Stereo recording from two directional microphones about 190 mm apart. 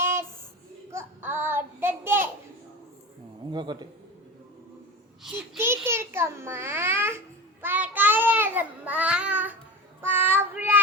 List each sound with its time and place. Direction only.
0.0 s a sound: 15° right (ahead or behind)
0.9 s child singing: 15° right (ahead or behind)
3.5 s a man's voice: 25° right (ahead or behind)
5.5 s a child's voice: 15° right (ahead or behind)
7.6 s child singing: 10° right (ahead or behind)